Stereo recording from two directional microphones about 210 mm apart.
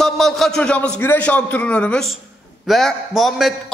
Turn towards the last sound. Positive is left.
turn(degrees=0)  # may be behind; listen again after turning